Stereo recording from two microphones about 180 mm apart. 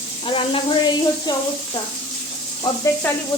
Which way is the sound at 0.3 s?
30° left (ahead or behind).